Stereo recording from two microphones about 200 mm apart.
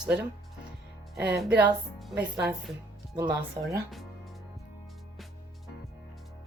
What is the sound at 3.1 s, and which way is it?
Speech, 20° right (ahead or behind).